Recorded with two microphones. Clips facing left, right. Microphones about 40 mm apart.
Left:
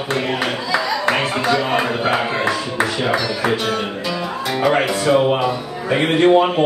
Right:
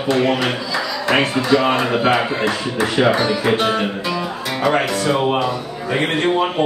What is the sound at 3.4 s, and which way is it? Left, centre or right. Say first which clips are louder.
Music: right 2 dB; right.